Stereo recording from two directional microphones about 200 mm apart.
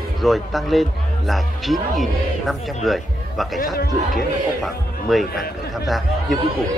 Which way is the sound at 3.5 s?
45° left (ahead or behind).